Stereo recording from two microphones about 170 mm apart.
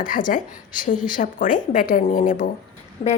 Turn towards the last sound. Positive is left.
turn(degrees=30)  # may be behind; listen again after turning